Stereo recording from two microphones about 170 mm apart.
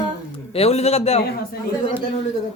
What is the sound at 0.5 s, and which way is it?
Speech, 35° left (ahead or behind).